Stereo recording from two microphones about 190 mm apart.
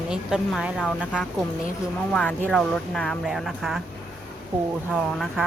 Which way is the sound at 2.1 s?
5° left (ahead or behind).